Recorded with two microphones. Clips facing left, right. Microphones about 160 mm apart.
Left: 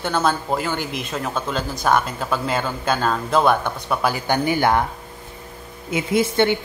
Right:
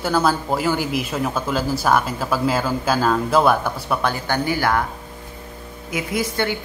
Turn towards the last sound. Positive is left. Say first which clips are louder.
# left 5 dB
turn(degrees=25)  # may be behind; listen again after turning